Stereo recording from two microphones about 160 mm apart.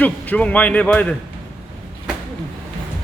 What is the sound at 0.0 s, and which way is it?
A man's voice, 10° left (ahead or behind).